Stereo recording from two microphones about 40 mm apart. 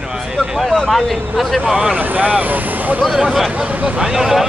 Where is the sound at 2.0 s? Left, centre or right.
Right.